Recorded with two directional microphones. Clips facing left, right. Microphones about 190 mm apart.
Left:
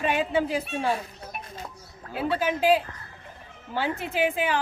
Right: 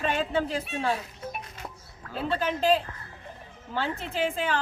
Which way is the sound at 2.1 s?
10° left (ahead or behind).